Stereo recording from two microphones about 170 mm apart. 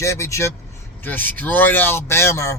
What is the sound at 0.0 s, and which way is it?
A man's voice, 15° left (ahead or behind).